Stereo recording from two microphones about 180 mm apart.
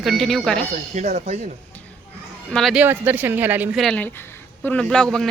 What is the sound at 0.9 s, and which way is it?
Speech, 40° right (ahead or behind).